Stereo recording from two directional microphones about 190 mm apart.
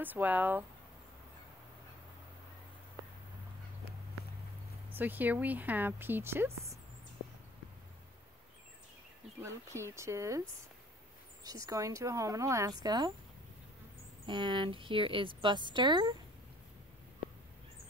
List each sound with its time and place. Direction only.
0.0 s speech: 10° right (ahead or behind)
4.9 s speech: 10° right (ahead or behind)
9.4 s speech: 15° right (ahead or behind)
14.2 s a woman's voice: 25° right (ahead or behind)